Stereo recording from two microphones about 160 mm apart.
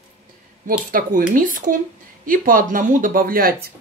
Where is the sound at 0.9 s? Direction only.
60° right (ahead or behind).